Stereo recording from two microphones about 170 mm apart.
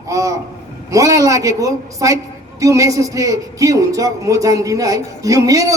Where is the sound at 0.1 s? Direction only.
20° right (ahead or behind).